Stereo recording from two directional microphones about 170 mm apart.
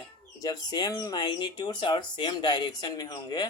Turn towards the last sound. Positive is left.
turn(degrees=25)  # may be behind; listen again after turning